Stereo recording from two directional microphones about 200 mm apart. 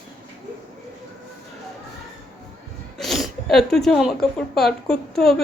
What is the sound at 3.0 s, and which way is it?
Speech, centre (ahead or behind).